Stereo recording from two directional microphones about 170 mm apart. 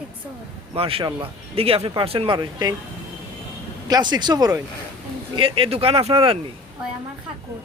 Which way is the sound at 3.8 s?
25° right (ahead or behind).